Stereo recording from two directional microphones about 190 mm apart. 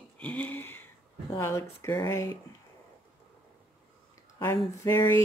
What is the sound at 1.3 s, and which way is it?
Speech, 15° left (ahead or behind).